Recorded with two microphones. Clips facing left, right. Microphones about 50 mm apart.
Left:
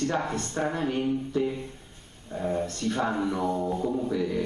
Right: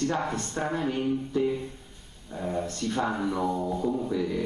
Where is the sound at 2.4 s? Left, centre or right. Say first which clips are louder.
Left 2 dB; centre.